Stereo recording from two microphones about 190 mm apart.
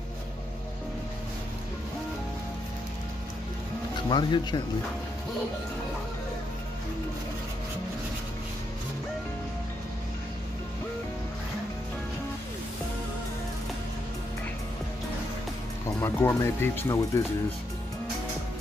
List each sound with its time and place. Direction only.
4.1 s speech: 25° left (ahead or behind)
16.0 s speech: 10° left (ahead or behind)